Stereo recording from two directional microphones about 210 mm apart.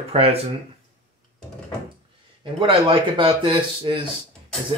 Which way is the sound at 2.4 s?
25° right (ahead or behind).